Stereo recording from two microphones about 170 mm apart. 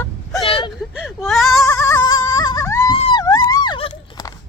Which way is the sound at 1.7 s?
20° left (ahead or behind).